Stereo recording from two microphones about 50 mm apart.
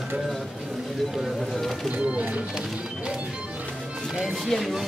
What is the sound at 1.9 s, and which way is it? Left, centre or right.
Speech, right.